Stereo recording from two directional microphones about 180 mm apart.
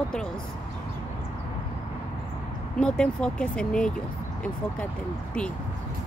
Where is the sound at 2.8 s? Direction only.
5° left (ahead or behind).